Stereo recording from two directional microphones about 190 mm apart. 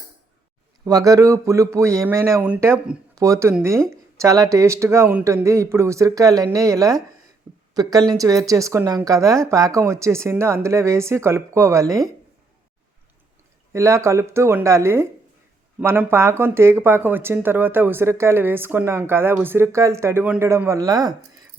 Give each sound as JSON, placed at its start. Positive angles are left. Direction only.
{"t": 0.9, "sound": "speech", "side_deg": -20}
{"t": 13.7, "sound": "speech", "side_deg": -15}